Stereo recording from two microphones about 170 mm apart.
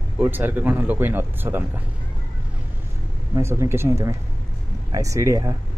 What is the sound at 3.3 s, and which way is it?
Speech, 15° right (ahead or behind).